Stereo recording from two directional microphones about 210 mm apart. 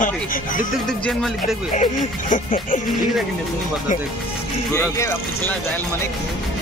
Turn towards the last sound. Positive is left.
turn(degrees=10)  # may be behind; listen again after turning